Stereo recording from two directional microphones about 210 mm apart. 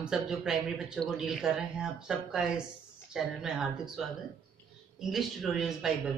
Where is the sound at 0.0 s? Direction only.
5° right (ahead or behind).